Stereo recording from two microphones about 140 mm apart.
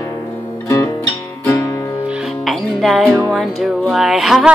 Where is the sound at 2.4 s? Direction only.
Centre (ahead or behind).